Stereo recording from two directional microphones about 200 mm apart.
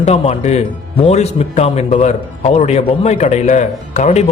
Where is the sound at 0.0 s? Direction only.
30° left (ahead or behind).